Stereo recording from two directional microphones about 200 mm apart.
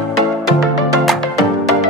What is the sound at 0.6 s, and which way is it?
Music, centre (ahead or behind).